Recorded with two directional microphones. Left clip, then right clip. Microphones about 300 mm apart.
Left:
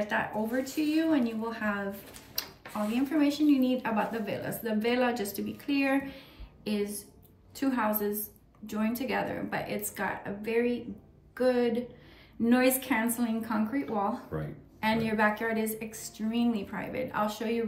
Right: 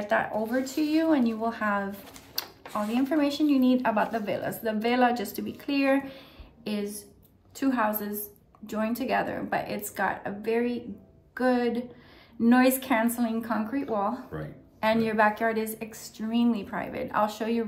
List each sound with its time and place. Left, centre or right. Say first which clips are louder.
0.7 s speech: right 3 dB; centre